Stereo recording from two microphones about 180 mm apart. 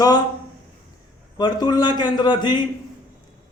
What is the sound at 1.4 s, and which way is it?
A man's voice, 25° left (ahead or behind).